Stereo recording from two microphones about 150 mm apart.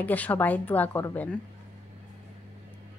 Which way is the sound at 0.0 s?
10° left (ahead or behind).